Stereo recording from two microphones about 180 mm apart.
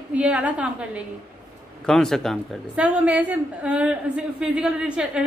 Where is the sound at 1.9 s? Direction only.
5° left (ahead or behind).